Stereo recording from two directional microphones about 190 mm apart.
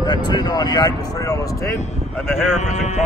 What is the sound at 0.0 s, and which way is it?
Speech, 20° left (ahead or behind).